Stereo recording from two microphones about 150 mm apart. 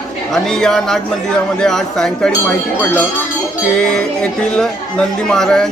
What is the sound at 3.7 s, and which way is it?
Speech, 5° left (ahead or behind).